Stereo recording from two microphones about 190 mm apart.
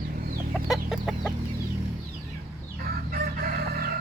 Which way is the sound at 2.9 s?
50° right (ahead or behind).